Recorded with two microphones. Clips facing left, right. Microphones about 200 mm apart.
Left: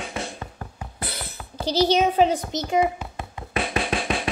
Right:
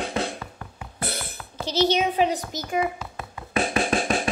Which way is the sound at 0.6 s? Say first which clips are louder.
Left 3 dB; 35° left (ahead or behind).